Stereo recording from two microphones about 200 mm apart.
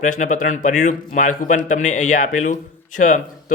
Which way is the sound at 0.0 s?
40° left (ahead or behind).